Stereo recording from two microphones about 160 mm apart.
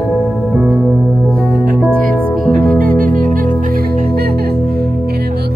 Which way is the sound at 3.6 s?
70° right (ahead or behind).